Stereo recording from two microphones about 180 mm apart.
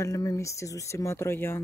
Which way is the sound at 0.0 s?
15° left (ahead or behind).